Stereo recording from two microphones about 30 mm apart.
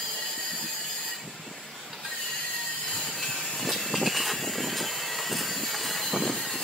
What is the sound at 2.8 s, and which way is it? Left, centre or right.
Train, left.